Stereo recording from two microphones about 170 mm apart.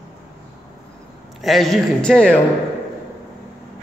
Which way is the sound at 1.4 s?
Centre (ahead or behind).